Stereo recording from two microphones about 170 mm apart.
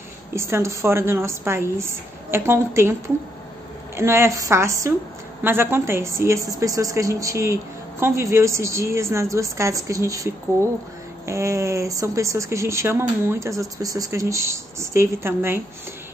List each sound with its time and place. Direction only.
0.3 s speech: 15° right (ahead or behind)